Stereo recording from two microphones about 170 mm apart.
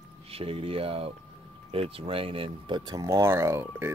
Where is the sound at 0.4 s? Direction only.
35° right (ahead or behind).